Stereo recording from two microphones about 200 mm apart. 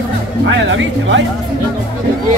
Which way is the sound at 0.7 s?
65° right (ahead or behind).